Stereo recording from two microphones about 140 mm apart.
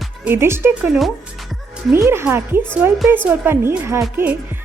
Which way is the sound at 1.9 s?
20° right (ahead or behind).